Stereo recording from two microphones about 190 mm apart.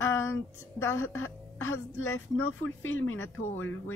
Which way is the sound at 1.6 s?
90° left.